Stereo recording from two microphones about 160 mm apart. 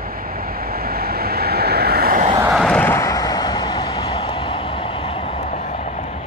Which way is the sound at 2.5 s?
5° left (ahead or behind).